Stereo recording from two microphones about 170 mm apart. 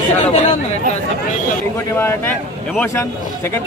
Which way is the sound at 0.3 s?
40° left (ahead or behind).